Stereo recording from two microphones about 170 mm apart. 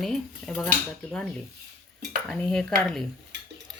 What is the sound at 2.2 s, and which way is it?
Speech, 5° left (ahead or behind).